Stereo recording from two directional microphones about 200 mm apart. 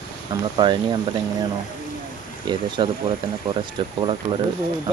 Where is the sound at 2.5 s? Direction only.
25° right (ahead or behind).